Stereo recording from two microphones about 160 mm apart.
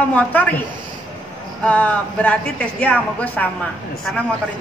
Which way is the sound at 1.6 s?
10° left (ahead or behind).